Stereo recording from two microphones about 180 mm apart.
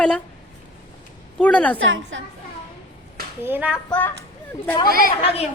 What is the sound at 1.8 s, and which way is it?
Speech, 90° right.